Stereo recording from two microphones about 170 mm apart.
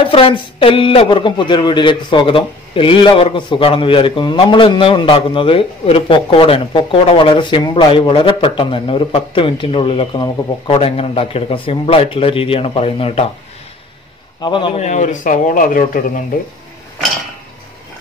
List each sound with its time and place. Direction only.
0.1 s speech: 35° left (ahead or behind)
14.4 s a man's voice: 30° left (ahead or behind)
14.8 s speech: 45° left (ahead or behind)